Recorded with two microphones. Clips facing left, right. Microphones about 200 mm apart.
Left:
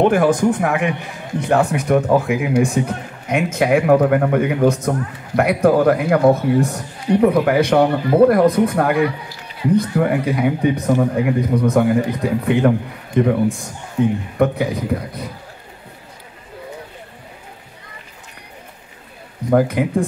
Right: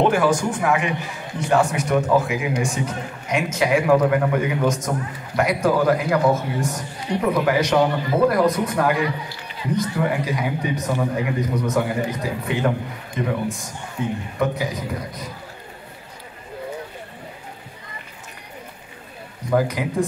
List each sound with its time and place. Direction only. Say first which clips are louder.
0.0 s a man's voice: left 4 dB; 55° left (ahead or behind)
14.4 s a man's voice: left 6 dB; 60° left (ahead or behind)
19.5 s speech: left 5 dB; 55° left (ahead or behind)